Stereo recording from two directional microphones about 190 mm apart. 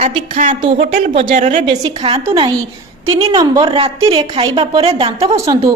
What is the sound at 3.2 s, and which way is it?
A woman's voice, 25° right (ahead or behind).